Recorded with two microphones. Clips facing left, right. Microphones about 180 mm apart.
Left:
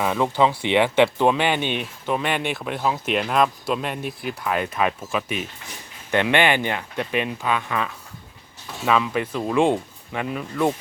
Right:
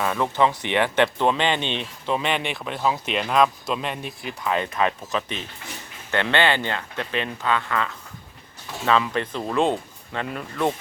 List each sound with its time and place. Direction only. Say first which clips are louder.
0.0 s speech: left 2 dB; 15° left (ahead or behind)
4.0 s speech: left 4 dB; 60° left (ahead or behind)
4.4 s speech: even; 5° left (ahead or behind)